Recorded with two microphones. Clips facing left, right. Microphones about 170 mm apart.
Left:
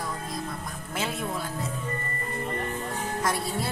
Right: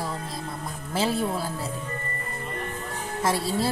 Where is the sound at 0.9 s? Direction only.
35° right (ahead or behind).